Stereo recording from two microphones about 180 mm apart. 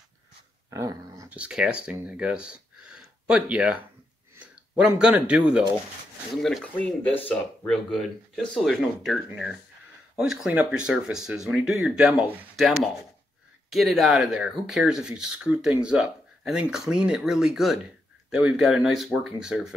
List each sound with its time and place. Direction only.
0.7 s dog: 15° right (ahead or behind)
1.3 s speech: 5° right (ahead or behind)